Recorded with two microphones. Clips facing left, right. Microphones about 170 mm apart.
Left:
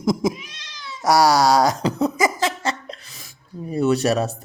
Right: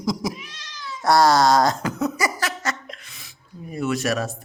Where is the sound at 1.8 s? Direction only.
35° left (ahead or behind).